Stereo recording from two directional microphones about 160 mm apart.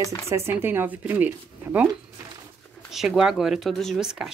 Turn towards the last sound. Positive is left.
turn(degrees=0)  # may be behind; listen again after turning